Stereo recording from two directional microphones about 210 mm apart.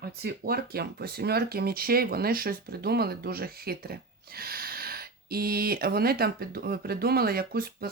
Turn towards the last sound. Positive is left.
turn(degrees=-45)  # may be behind; listen again after turning